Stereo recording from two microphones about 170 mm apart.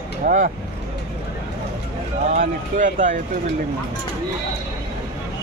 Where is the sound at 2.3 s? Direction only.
45° right (ahead or behind).